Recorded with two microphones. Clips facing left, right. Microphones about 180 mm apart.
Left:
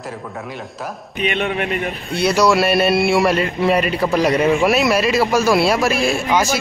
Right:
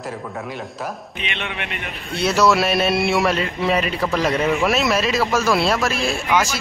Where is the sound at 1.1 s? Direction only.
45° left (ahead or behind).